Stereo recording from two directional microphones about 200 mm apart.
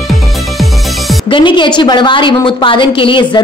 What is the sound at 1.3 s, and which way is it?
A woman's voice, 25° left (ahead or behind).